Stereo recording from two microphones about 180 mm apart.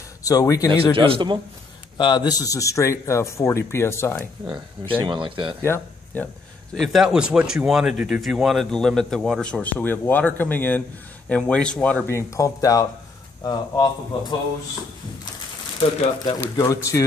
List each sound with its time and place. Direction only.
0.2 s a man's voice: 20° left (ahead or behind)
0.9 s speech: 30° right (ahead or behind)
2.0 s speech: 25° left (ahead or behind)
4.5 s speech: 25° right (ahead or behind)
5.6 s speech: 15° left (ahead or behind)
6.7 s a man's voice: centre (ahead or behind); by 14.3 s 20° left (ahead or behind)
16.3 s speech: 15° left (ahead or behind)